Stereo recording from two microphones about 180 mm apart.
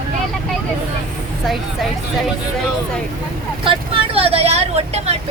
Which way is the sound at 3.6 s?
30° right (ahead or behind).